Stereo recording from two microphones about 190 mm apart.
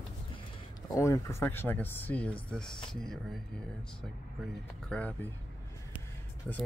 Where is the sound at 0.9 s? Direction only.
15° left (ahead or behind).